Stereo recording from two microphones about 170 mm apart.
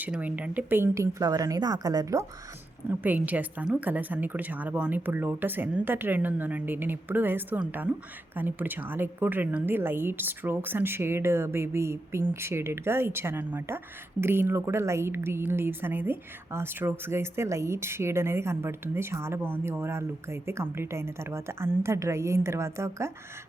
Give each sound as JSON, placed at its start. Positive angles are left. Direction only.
{"t": 0.0, "sound": "a woman's voice", "side_deg": -10}